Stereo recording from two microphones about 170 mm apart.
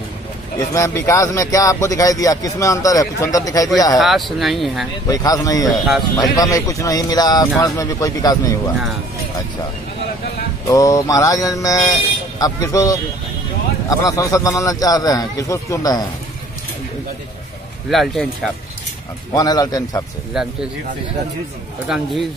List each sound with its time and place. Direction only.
0.7 s speech: 20° left (ahead or behind)
4.0 s speech: centre (ahead or behind)
5.0 s speech: 20° left (ahead or behind)
10.7 s speech: 20° left (ahead or behind)
17.8 s speech: centre (ahead or behind)
19.3 s speech: 20° left (ahead or behind)
20.4 s speech: 5° right (ahead or behind)
21.8 s speech: 5° right (ahead or behind)